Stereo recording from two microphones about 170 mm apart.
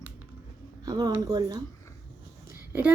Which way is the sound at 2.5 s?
10° right (ahead or behind).